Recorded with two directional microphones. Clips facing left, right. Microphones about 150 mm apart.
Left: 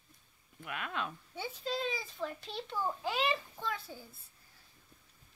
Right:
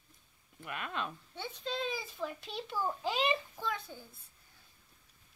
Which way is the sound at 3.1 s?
20° right (ahead or behind).